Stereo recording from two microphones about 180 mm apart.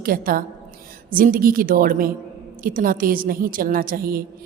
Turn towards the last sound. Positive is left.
turn(degrees=-55)  # may be behind; listen again after turning